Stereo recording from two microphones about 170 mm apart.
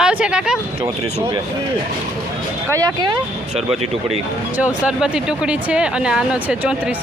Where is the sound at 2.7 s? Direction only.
25° right (ahead or behind).